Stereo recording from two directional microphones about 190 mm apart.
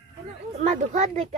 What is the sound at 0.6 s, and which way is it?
Speech, 40° right (ahead or behind).